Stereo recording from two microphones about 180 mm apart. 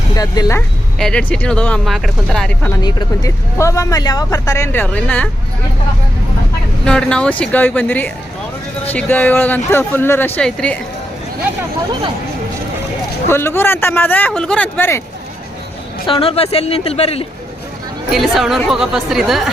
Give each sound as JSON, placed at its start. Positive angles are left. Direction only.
{"t": 0.2, "sound": "speech", "side_deg": 20}
{"t": 0.9, "sound": "speech", "side_deg": 5}
{"t": 2.8, "sound": "speech", "side_deg": 20}
{"t": 6.8, "sound": "speech", "side_deg": 5}
{"t": 13.2, "sound": "speech", "side_deg": 15}
{"t": 16.0, "sound": "speech", "side_deg": 30}
{"t": 18.1, "sound": "speech", "side_deg": 0}